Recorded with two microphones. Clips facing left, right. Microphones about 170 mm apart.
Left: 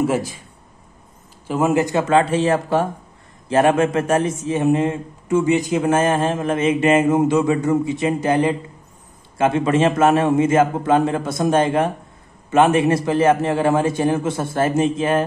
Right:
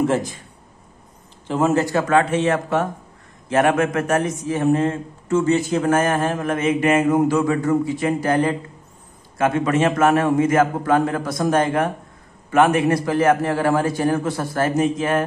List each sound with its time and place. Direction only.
0.0 s speech: 10° left (ahead or behind)
1.5 s a man's voice: 10° left (ahead or behind); by 15.2 s 30° left (ahead or behind)